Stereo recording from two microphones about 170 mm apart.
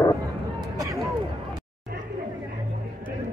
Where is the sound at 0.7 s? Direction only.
20° right (ahead or behind).